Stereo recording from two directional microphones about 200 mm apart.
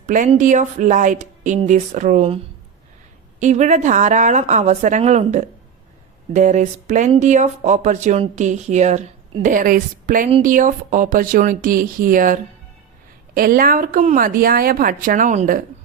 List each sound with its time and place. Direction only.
0.0 s speech: 40° right (ahead or behind)
3.4 s a woman's voice: 35° right (ahead or behind)